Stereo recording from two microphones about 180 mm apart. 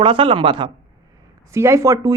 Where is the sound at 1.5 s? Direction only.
15° right (ahead or behind).